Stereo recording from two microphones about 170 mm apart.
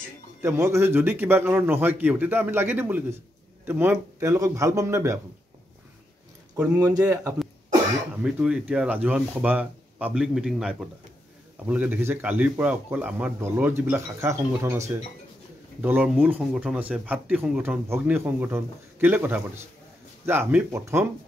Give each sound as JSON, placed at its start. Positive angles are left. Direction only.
{"t": 0.4, "sound": "speech", "side_deg": -15}
{"t": 6.8, "sound": "speech", "side_deg": -20}
{"t": 8.2, "sound": "speech", "side_deg": -5}